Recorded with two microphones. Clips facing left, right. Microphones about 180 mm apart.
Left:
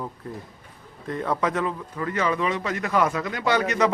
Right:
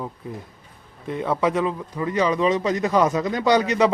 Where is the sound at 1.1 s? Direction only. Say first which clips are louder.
Right 3 dB; 10° right (ahead or behind).